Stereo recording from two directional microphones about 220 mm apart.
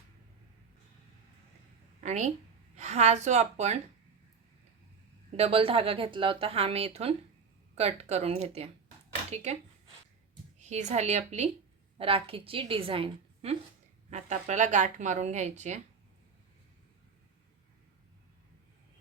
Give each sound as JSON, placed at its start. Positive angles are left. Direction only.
{"t": 2.0, "sound": "a woman's voice", "side_deg": -30}
{"t": 5.4, "sound": "speech", "side_deg": -25}
{"t": 10.6, "sound": "a woman's voice", "side_deg": -30}